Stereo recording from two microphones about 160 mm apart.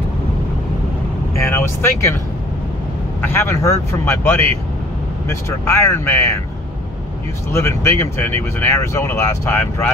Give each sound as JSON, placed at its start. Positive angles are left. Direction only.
{"t": 1.4, "sound": "speech", "side_deg": 15}
{"t": 3.2, "sound": "speech", "side_deg": 15}
{"t": 7.5, "sound": "speech", "side_deg": 15}